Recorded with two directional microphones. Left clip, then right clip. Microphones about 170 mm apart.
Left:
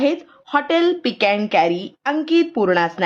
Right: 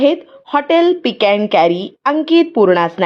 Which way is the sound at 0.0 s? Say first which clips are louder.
Right 6 dB; 15° right (ahead or behind).